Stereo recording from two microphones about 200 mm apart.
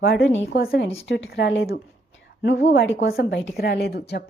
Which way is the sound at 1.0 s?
65° left (ahead or behind).